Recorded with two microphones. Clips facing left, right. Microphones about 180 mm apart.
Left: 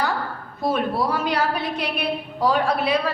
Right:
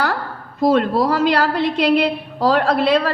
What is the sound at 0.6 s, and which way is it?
A woman's voice, 90° right.